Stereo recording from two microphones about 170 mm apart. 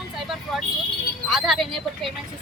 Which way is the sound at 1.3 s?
Centre (ahead or behind).